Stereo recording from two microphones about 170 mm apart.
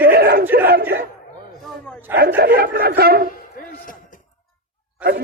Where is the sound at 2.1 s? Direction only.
65° right (ahead or behind).